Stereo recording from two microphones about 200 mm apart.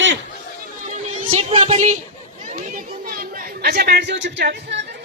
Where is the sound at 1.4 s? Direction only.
35° right (ahead or behind).